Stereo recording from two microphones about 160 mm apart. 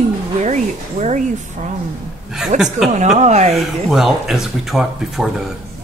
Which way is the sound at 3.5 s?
Centre (ahead or behind).